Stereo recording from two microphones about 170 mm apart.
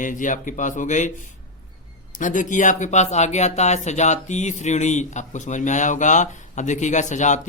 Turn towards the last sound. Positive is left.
turn(degrees=45)  # may be behind; listen again after turning